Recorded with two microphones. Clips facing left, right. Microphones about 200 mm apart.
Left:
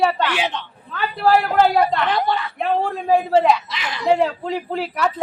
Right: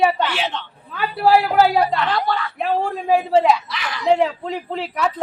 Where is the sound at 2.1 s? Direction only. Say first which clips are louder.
Left 1 dB; 20° left (ahead or behind).